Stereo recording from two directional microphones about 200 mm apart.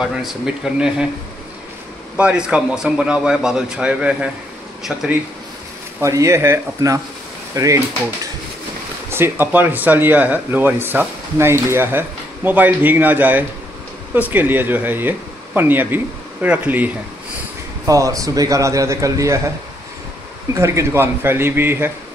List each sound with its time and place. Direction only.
0.0 s a man's voice: centre (ahead or behind)
2.1 s a man's voice: 5° right (ahead or behind)
5.9 s speech: 15° right (ahead or behind)
9.1 s speech: 10° right (ahead or behind)
20.5 s speech: 15° right (ahead or behind)